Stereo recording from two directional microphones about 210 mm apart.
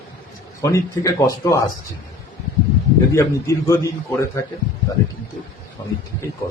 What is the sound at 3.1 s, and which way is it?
A man's voice, 15° left (ahead or behind).